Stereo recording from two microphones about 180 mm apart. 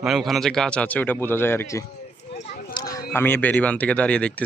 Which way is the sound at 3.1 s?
10° left (ahead or behind).